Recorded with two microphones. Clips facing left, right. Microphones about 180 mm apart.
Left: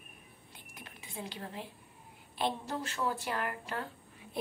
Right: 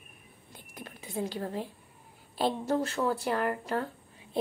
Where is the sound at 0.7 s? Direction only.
40° right (ahead or behind).